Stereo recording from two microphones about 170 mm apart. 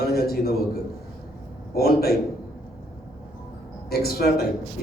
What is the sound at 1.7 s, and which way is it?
Speech, 65° left (ahead or behind).